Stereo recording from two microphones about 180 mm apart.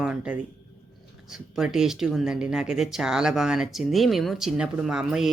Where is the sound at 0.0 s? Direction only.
5° right (ahead or behind).